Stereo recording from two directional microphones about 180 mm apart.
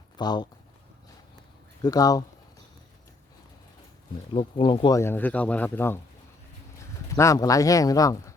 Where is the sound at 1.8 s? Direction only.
20° left (ahead or behind).